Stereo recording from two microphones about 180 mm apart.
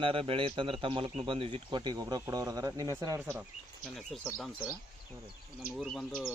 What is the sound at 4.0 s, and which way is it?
Speech, 5° left (ahead or behind).